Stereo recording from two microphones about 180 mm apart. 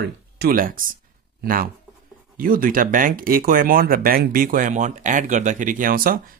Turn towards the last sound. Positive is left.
turn(degrees=-50)  # may be behind; listen again after turning